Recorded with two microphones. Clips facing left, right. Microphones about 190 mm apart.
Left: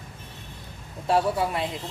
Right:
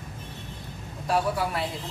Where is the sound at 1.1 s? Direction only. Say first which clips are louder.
Left 3 dB; 25° left (ahead or behind).